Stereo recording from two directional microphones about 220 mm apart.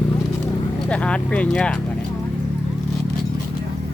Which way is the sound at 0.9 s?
5° left (ahead or behind).